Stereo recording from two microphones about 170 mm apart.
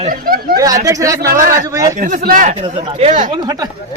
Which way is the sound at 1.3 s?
50° right (ahead or behind).